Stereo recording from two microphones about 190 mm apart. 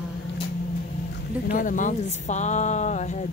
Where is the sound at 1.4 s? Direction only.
45° left (ahead or behind).